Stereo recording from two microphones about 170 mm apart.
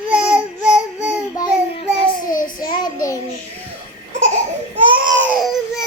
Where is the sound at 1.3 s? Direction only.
30° left (ahead or behind).